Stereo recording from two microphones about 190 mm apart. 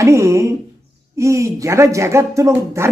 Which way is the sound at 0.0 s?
15° right (ahead or behind).